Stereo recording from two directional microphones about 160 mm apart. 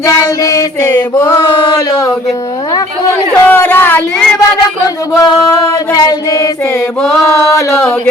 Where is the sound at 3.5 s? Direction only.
15° left (ahead or behind).